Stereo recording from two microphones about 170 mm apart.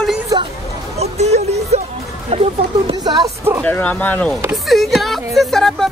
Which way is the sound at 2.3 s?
40° right (ahead or behind).